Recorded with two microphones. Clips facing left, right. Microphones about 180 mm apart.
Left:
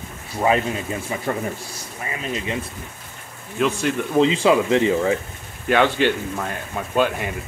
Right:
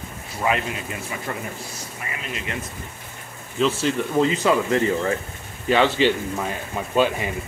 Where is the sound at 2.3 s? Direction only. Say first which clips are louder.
Left 4 dB; 25° left (ahead or behind).